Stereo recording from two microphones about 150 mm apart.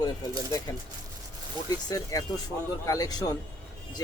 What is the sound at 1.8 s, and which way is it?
Speech, 25° left (ahead or behind).